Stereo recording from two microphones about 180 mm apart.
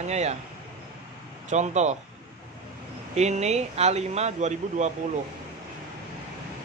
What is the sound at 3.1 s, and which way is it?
Speech, 40° right (ahead or behind).